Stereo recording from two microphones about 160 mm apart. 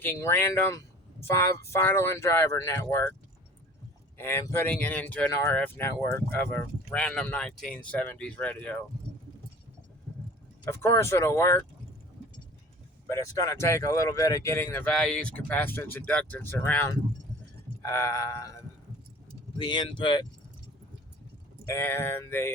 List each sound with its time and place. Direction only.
0.0 s speech: 15° left (ahead or behind)
4.2 s speech: 15° left (ahead or behind)
10.7 s speech: 15° left (ahead or behind)
13.1 s speech: 20° left (ahead or behind)
17.8 s a sound: 15° left (ahead or behind)
21.7 s speech: 15° left (ahead or behind)